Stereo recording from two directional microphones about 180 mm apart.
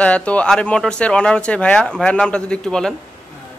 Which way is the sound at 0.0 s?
5° left (ahead or behind).